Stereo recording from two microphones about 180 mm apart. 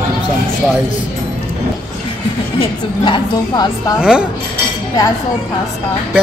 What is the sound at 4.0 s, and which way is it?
Speech, 5° right (ahead or behind).